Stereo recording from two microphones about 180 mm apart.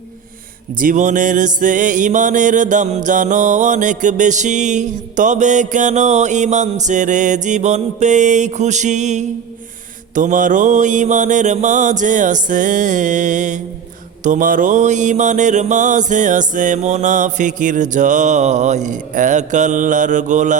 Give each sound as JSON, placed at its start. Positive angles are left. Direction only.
{"t": 0.8, "sound": "music", "side_deg": -45}